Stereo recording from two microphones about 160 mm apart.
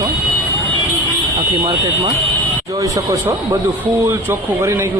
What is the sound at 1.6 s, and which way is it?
A man's voice, 20° right (ahead or behind).